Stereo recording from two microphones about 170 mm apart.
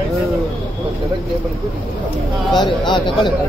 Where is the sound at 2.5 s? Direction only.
25° left (ahead or behind).